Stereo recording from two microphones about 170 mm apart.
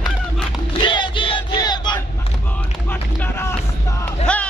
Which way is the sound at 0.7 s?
30° left (ahead or behind).